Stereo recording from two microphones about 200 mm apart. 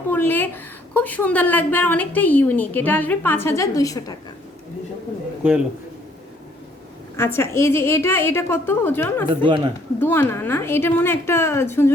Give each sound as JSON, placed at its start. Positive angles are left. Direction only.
{"t": 0.1, "sound": "a woman's voice", "side_deg": 10}
{"t": 5.4, "sound": "a man's voice", "side_deg": -5}
{"t": 7.2, "sound": "a woman's voice", "side_deg": 15}
{"t": 9.3, "sound": "speech", "side_deg": -25}
{"t": 10.0, "sound": "a woman's voice", "side_deg": 10}